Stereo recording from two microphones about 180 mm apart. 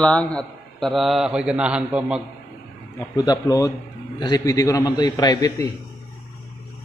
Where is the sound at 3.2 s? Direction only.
20° left (ahead or behind).